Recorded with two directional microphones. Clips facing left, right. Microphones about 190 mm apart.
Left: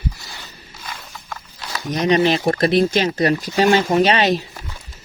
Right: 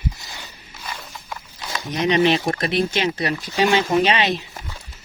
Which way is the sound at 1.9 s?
40° left (ahead or behind).